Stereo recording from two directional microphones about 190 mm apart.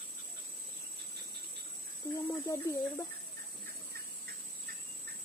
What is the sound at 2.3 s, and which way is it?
Speech, 15° left (ahead or behind).